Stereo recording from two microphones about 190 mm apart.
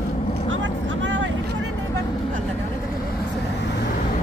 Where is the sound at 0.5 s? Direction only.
85° right.